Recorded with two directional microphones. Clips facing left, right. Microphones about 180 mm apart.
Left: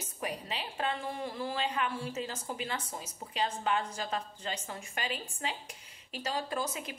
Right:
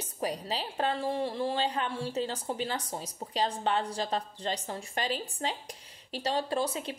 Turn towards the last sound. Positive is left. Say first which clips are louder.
# right 5 dB
turn(degrees=-30)  # may be behind; listen again after turning